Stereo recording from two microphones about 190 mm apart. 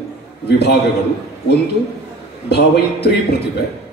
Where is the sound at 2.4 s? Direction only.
60° left (ahead or behind).